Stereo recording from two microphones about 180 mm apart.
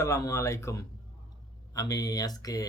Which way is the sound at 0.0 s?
15° left (ahead or behind).